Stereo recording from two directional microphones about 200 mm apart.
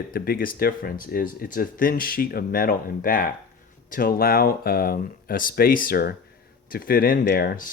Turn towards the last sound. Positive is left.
turn(degrees=50)  # may be behind; listen again after turning